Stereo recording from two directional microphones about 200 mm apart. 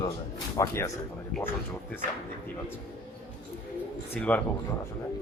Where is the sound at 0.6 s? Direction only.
15° left (ahead or behind).